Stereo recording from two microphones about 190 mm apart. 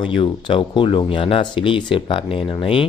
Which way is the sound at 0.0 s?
25° left (ahead or behind).